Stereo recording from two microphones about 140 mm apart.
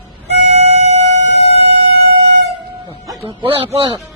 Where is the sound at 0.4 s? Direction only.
50° right (ahead or behind).